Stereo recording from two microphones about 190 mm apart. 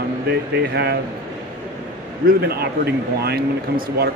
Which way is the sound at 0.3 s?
60° right (ahead or behind).